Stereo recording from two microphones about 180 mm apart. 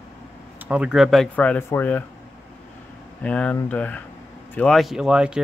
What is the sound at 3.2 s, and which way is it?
Speech, 5° left (ahead or behind).